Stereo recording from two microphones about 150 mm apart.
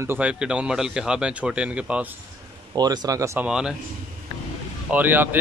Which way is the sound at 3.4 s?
5° right (ahead or behind).